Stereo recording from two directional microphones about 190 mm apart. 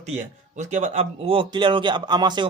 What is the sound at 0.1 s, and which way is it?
A man's voice, 40° right (ahead or behind).